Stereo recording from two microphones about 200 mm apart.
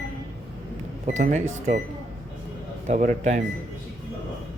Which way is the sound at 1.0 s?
40° right (ahead or behind).